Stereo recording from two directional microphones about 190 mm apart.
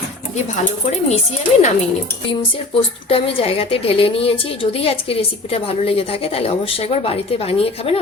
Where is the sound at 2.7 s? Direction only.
30° left (ahead or behind).